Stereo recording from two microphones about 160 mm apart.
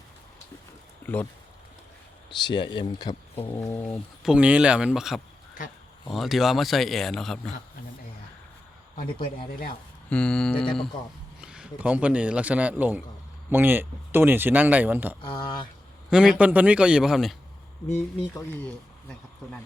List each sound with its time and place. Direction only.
1.0 s speech: 10° left (ahead or behind)
2.3 s speech: 30° left (ahead or behind)
3.6 s speech: 20° left (ahead or behind)
3.8 s speech: centre (ahead or behind)
10.1 s speech: 5° left (ahead or behind)
11.3 s speech: 5° right (ahead or behind)
15.2 s speech: 30° left (ahead or behind)
16.0 s speech: 5° right (ahead or behind)
18.3 s speech: 10° left (ahead or behind)